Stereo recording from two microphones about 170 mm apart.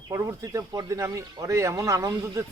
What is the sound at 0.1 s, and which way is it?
Speech, 15° right (ahead or behind).